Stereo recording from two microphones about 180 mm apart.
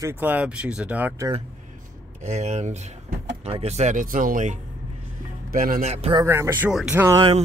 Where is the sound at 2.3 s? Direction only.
40° right (ahead or behind).